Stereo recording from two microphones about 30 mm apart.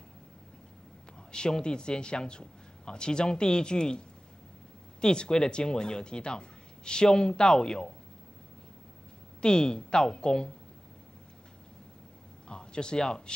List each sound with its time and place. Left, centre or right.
1.3 s a man's voice: left
5.0 s a man's voice: left
9.4 s a man's voice: left
12.4 s a man's voice: left